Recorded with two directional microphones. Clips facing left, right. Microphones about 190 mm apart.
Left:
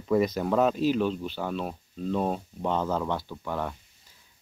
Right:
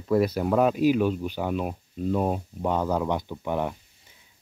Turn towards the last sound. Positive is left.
turn(degrees=-20)  # may be behind; listen again after turning